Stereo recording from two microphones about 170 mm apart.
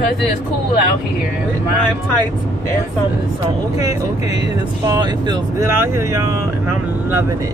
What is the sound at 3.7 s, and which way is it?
Speech, 20° right (ahead or behind).